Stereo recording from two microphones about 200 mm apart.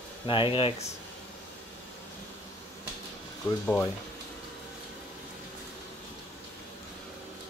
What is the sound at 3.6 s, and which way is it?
Speech, 10° left (ahead or behind).